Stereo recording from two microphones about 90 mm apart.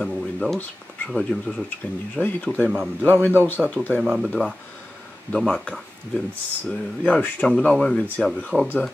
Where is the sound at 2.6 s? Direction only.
20° right (ahead or behind).